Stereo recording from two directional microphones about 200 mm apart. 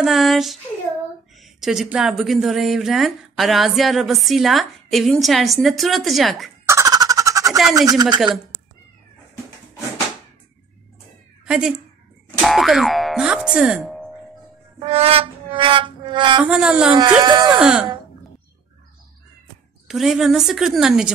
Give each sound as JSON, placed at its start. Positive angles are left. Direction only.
{"t": 0.0, "sound": "speech", "side_deg": 0}
{"t": 6.7, "sound": "a sound", "side_deg": -15}
{"t": 7.7, "sound": "speech", "side_deg": -20}
{"t": 11.4, "sound": "speech", "side_deg": -5}
{"t": 14.8, "sound": "music", "side_deg": -30}
{"t": 16.4, "sound": "speech", "side_deg": -5}
{"t": 17.2, "sound": "speech", "side_deg": -20}
{"t": 17.6, "sound": "speech", "side_deg": 0}
{"t": 19.9, "sound": "speech", "side_deg": 0}